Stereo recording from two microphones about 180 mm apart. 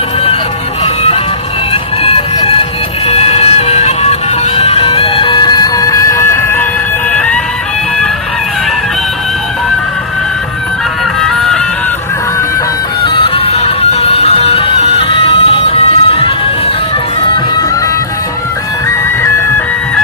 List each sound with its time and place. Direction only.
1.7 s music: 30° left (ahead or behind); by 7.3 s 5° left (ahead or behind)
11.2 s music: 5° left (ahead or behind)
13.1 s music: 30° left (ahead or behind)
17.3 s music: 25° left (ahead or behind)